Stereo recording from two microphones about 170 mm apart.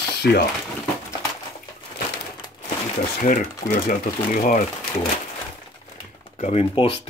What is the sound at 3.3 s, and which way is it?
Speech, 50° left (ahead or behind).